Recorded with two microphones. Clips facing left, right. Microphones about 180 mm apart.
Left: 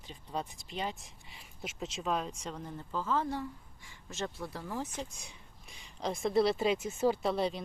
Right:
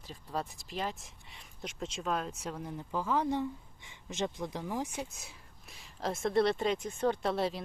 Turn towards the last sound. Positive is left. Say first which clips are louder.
# even
turn(degrees=0)  # may be behind; listen again after turning